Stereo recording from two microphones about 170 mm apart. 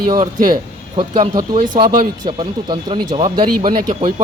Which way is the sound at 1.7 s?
50° right (ahead or behind).